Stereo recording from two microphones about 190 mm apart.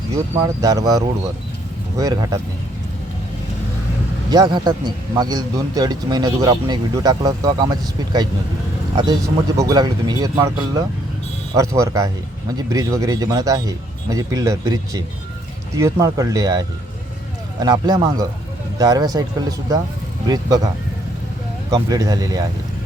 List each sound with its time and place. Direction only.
0.4 s speech: 20° right (ahead or behind)
4.3 s speech: 20° right (ahead or behind)
9.6 s speech: 20° right (ahead or behind)
21.7 s speech: 20° right (ahead or behind)